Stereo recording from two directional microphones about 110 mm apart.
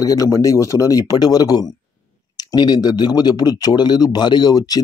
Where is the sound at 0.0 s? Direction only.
35° left (ahead or behind).